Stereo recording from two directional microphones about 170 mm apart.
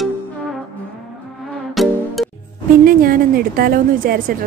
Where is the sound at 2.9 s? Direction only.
60° right (ahead or behind).